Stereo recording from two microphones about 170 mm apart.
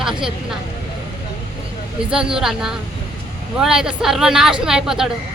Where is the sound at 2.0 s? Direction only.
5° right (ahead or behind).